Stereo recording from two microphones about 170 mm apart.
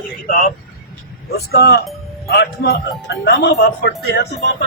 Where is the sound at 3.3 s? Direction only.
90° left.